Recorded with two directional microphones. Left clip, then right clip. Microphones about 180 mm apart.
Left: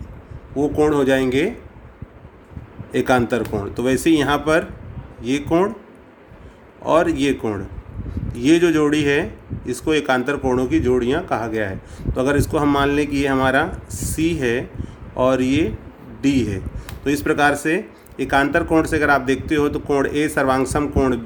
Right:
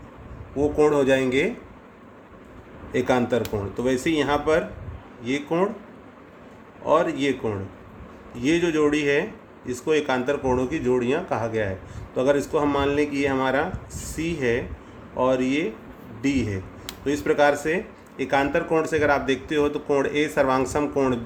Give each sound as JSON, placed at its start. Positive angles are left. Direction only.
{"t": 0.5, "sound": "speech", "side_deg": 30}
{"t": 2.9, "sound": "speech", "side_deg": 40}
{"t": 6.8, "sound": "speech", "side_deg": 45}